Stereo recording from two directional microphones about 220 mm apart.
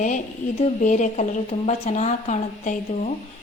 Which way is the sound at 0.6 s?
35° left (ahead or behind).